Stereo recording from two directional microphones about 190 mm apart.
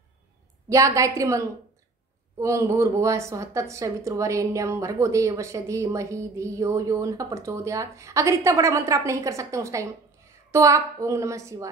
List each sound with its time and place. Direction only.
0.7 s a woman's voice: 15° right (ahead or behind)